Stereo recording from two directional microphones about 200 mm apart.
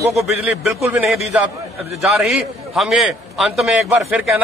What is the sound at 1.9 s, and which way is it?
A man's voice, centre (ahead or behind).